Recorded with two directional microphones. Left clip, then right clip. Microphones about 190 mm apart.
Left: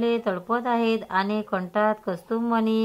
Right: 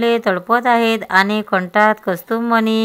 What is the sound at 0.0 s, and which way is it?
A woman's voice, 30° right (ahead or behind).